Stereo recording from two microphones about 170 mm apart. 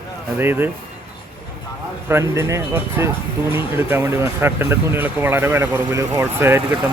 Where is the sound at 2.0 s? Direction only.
15° right (ahead or behind).